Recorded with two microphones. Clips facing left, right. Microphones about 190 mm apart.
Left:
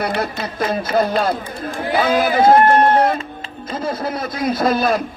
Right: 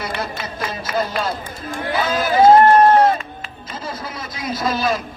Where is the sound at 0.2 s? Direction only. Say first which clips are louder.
Left 5 dB; 55° left (ahead or behind).